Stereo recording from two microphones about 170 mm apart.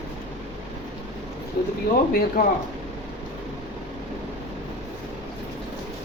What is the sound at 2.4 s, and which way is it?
Speech, 55° left (ahead or behind).